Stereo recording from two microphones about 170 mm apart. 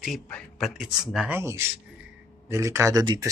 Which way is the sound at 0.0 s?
Centre (ahead or behind).